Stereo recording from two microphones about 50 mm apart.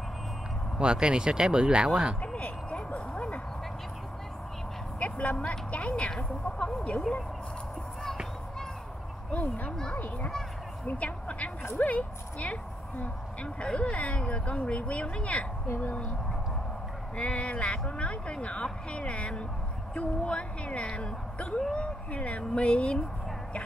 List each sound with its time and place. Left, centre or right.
0.7 s speech: centre
2.2 s vehicle: left
5.0 s vehicle: left
5.4 s speech: left
9.3 s a woman's voice: left
9.7 s speech: centre
9.9 s a woman's voice: left
17.2 s speech: left